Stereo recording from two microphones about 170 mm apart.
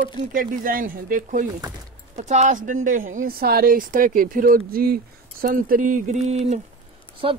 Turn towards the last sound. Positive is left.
turn(degrees=-30)  # may be behind; listen again after turning